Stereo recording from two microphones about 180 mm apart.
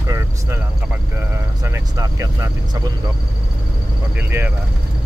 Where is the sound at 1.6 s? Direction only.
15° right (ahead or behind).